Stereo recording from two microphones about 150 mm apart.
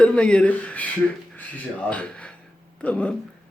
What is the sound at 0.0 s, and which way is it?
A man's voice, 5° left (ahead or behind).